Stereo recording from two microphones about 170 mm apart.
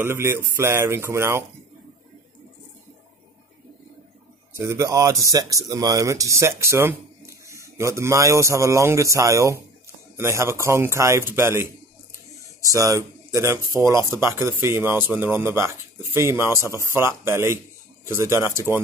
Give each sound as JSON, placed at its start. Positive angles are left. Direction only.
{"t": 0.0, "sound": "speech", "side_deg": -15}
{"t": 4.6, "sound": "speech", "side_deg": -15}